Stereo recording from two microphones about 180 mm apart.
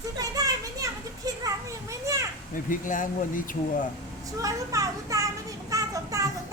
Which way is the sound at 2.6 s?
45° left (ahead or behind).